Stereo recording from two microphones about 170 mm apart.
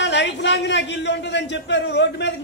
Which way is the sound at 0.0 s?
90° left.